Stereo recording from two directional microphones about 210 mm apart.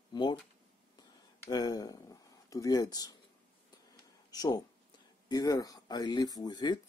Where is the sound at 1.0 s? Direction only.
20° left (ahead or behind).